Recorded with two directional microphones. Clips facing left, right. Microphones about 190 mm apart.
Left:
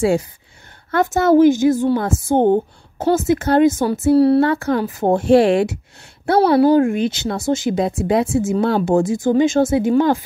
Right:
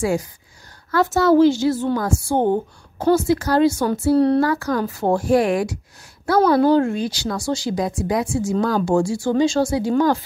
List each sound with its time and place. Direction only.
0.0 s a woman's voice: 25° left (ahead or behind)
6.6 s speech: 15° left (ahead or behind)